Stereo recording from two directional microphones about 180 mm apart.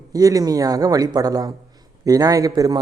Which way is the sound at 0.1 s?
20° right (ahead or behind).